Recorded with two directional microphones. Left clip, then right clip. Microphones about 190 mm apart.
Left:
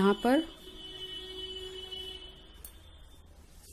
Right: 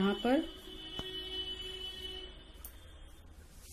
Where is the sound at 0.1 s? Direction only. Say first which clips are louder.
Left 5 dB; 45° left (ahead or behind).